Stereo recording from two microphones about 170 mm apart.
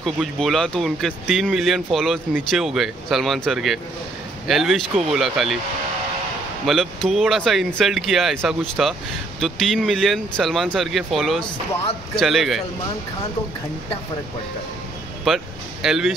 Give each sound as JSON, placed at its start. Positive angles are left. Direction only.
{"t": 0.0, "sound": "speech", "side_deg": 0}
{"t": 6.6, "sound": "speech", "side_deg": 0}
{"t": 15.2, "sound": "speech", "side_deg": 0}